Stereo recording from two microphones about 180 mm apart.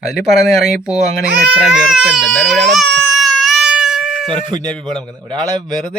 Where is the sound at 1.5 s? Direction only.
5° right (ahead or behind).